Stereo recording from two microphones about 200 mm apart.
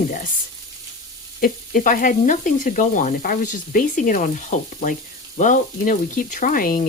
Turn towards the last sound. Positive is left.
turn(degrees=45)  # may be behind; listen again after turning